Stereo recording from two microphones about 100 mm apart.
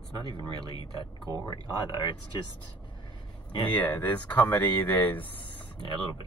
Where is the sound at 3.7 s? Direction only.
15° left (ahead or behind).